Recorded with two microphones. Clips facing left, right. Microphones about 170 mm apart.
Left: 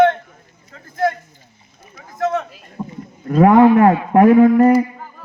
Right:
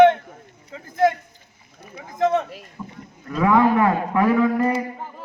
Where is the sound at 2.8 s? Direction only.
30° left (ahead or behind).